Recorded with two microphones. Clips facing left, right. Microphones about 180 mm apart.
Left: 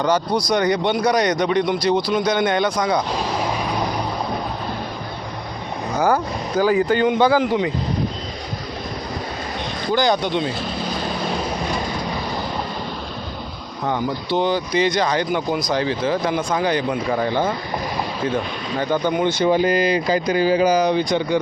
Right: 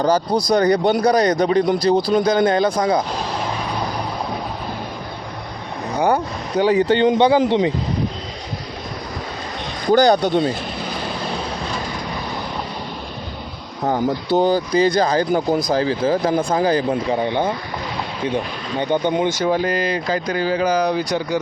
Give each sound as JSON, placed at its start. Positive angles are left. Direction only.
{"t": 0.5, "sound": "speech", "side_deg": -35}
{"t": 6.6, "sound": "speech", "side_deg": -25}
{"t": 9.9, "sound": "speech", "side_deg": -40}
{"t": 13.8, "sound": "speech", "side_deg": -40}
{"t": 17.1, "sound": "speech", "side_deg": -20}
{"t": 18.8, "sound": "speech", "side_deg": -20}
{"t": 19.4, "sound": "speech", "side_deg": 0}